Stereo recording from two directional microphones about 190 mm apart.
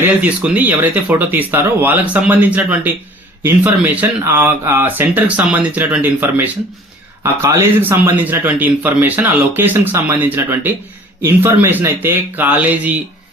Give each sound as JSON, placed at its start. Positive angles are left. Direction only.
{"t": 0.0, "sound": "speech", "side_deg": -10}